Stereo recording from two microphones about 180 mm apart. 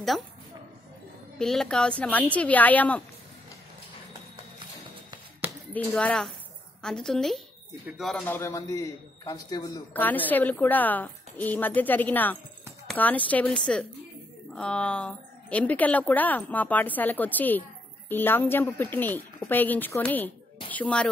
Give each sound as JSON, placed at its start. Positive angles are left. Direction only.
{"t": 1.4, "sound": "a woman's voice", "side_deg": 0}
{"t": 5.7, "sound": "a woman's voice", "side_deg": 10}
{"t": 8.3, "sound": "a man's voice", "side_deg": 15}
{"t": 9.9, "sound": "a woman's voice", "side_deg": 10}